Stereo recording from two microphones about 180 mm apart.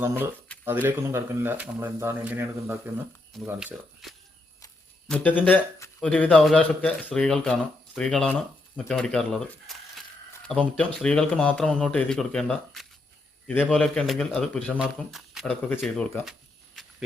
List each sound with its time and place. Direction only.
0.6 s speech: 10° right (ahead or behind)
5.0 s a man's voice: 5° left (ahead or behind)